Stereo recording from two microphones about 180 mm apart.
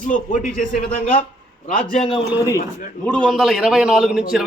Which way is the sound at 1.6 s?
40° left (ahead or behind).